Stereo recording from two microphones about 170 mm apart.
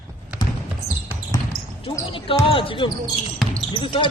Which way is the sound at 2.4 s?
30° left (ahead or behind).